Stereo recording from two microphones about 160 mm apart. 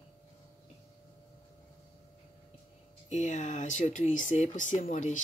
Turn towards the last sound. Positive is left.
turn(degrees=50)  # may be behind; listen again after turning